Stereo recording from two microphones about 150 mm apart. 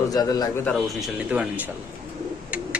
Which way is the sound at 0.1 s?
25° left (ahead or behind).